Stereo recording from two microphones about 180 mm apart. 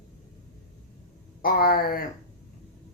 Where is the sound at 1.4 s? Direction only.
55° left (ahead or behind).